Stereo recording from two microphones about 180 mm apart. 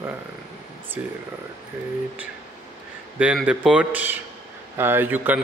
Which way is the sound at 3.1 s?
5° right (ahead or behind).